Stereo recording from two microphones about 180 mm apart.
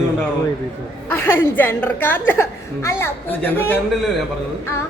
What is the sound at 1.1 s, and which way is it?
A woman's voice, 10° left (ahead or behind).